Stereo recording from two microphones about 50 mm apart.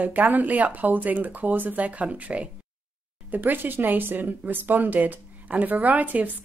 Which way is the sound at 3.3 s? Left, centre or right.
Right.